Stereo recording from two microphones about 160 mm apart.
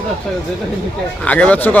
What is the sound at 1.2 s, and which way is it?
Speech, 10° left (ahead or behind).